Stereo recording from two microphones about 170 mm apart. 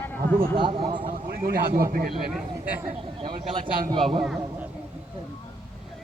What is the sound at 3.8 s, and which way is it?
Speech, 30° right (ahead or behind).